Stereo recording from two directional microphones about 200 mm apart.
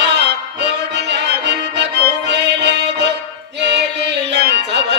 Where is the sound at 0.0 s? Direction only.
60° right (ahead or behind).